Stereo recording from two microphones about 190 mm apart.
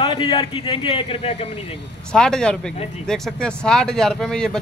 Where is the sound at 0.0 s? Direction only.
25° left (ahead or behind).